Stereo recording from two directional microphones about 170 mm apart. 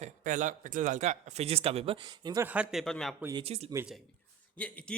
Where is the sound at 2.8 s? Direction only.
5° left (ahead or behind).